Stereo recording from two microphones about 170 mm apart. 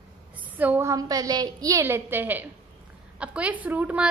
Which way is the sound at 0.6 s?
15° right (ahead or behind).